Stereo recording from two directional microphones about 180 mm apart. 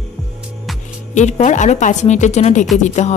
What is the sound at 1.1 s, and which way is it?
A woman's voice, 40° left (ahead or behind).